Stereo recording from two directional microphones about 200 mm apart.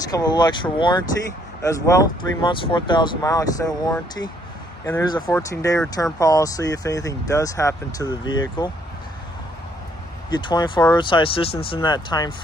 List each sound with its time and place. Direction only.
0.1 s speech: 20° left (ahead or behind)
10.3 s speech: 20° left (ahead or behind)